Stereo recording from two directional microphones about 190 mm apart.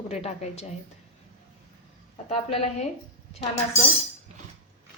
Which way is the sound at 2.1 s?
30° left (ahead or behind).